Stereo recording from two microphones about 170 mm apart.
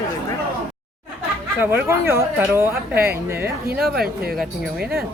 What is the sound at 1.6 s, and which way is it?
Speech, 15° right (ahead or behind).